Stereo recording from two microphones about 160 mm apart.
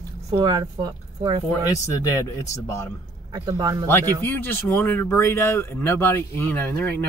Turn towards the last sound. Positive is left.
turn(degrees=10)  # may be behind; listen again after turning